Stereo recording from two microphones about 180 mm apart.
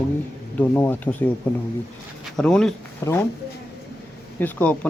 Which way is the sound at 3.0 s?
15° left (ahead or behind).